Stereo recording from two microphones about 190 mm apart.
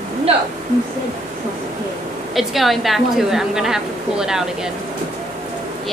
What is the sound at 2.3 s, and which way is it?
A woman's voice, centre (ahead or behind).